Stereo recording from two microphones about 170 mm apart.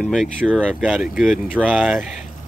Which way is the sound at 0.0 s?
Centre (ahead or behind).